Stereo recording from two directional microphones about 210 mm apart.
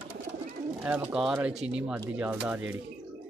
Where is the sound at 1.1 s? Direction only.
5° right (ahead or behind).